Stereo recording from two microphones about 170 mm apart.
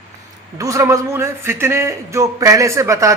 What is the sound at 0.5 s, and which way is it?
A man's voice, 20° right (ahead or behind).